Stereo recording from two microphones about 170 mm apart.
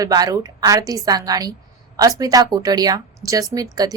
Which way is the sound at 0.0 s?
20° right (ahead or behind).